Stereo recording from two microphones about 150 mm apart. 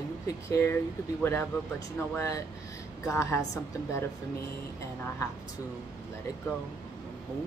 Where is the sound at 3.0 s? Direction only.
20° left (ahead or behind).